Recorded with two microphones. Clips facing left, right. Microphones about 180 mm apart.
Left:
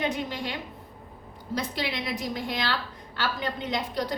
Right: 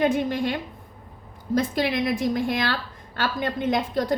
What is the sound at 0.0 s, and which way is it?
A woman's voice, 50° right (ahead or behind).